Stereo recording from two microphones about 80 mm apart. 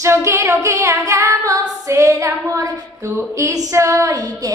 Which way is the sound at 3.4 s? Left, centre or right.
Right.